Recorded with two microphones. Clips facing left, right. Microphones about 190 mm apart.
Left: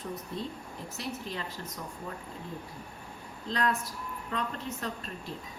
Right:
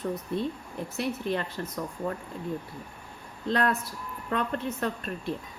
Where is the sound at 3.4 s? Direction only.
60° right (ahead or behind).